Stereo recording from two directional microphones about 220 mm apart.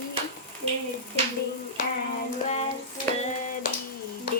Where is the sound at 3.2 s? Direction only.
35° left (ahead or behind).